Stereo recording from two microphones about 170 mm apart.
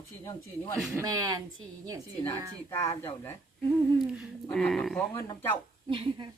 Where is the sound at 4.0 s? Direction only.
Centre (ahead or behind).